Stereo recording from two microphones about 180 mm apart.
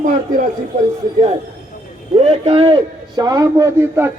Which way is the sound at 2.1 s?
35° right (ahead or behind).